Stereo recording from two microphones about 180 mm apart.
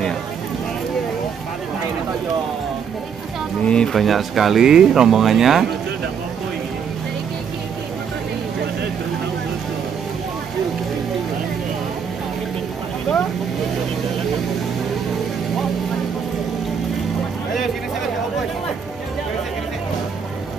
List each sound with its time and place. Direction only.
3.6 s speech: 5° left (ahead or behind)